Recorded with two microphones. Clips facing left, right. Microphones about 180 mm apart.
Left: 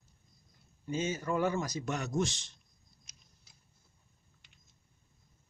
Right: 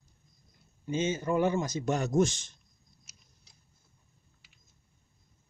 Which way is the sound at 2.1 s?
45° right (ahead or behind).